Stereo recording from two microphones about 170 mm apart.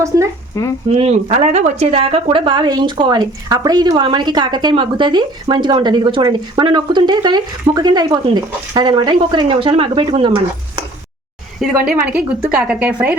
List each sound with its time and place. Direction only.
0.6 s speech: 15° left (ahead or behind)
0.9 s a woman's voice: 35° right (ahead or behind)
11.6 s a woman's voice: 5° right (ahead or behind)